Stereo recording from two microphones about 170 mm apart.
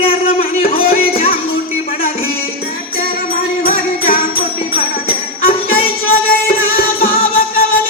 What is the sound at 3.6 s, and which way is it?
Music, 60° left (ahead or behind).